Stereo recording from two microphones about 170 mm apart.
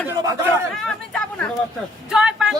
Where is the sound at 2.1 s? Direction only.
5° right (ahead or behind).